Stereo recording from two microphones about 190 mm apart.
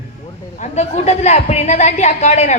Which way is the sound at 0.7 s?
35° left (ahead or behind).